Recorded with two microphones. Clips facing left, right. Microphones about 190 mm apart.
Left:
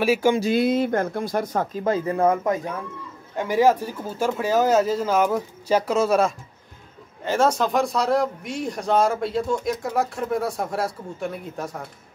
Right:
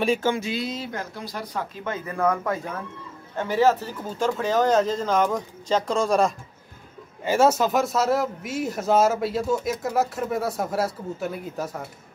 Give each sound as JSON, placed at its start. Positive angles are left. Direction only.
{"t": 0.0, "sound": "speech", "side_deg": 5}
{"t": 0.5, "sound": "speech", "side_deg": 55}
{"t": 7.2, "sound": "a man's voice", "side_deg": -5}